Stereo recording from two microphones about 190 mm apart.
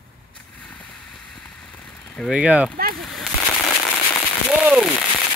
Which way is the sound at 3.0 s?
Centre (ahead or behind).